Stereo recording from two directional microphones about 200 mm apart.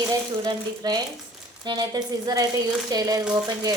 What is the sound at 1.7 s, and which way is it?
A woman's voice, 20° right (ahead or behind).